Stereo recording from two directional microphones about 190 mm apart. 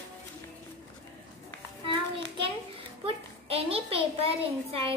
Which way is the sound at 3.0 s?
30° right (ahead or behind).